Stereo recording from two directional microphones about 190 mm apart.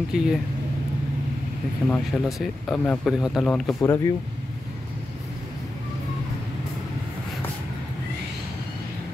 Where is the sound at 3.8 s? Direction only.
20° left (ahead or behind).